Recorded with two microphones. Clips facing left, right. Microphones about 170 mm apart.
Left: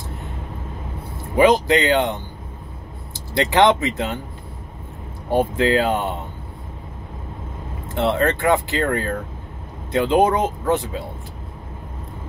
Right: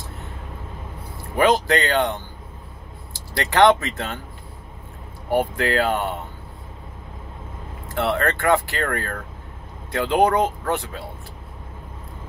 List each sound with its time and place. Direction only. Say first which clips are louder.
1.3 s speech: left 3 dB; 15° left (ahead or behind)
5.3 s speech: left 3 dB; 20° left (ahead or behind)
7.9 s speech: left 3 dB; 20° left (ahead or behind)